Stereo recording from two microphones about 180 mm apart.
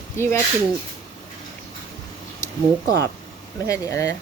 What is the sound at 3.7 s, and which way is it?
Speech, 15° left (ahead or behind).